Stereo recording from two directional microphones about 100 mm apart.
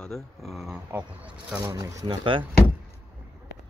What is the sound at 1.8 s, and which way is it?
Speech, 55° right (ahead or behind).